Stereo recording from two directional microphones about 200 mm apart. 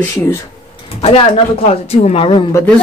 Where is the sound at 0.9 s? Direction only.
30° left (ahead or behind).